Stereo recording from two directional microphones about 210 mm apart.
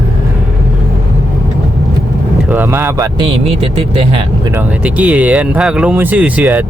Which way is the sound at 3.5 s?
25° right (ahead or behind).